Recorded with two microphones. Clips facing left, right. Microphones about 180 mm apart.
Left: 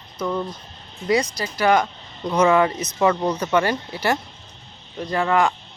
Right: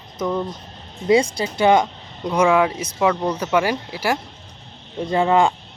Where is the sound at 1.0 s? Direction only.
25° right (ahead or behind).